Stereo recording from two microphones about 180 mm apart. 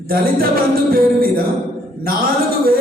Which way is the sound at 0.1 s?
55° right (ahead or behind).